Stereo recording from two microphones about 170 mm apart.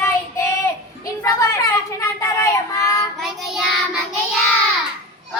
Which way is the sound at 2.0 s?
20° left (ahead or behind).